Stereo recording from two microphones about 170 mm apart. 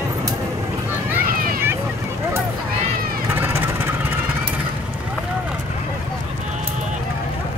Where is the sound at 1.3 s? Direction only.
55° right (ahead or behind).